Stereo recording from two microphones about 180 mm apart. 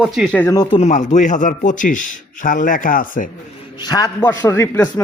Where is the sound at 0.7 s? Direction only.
40° left (ahead or behind).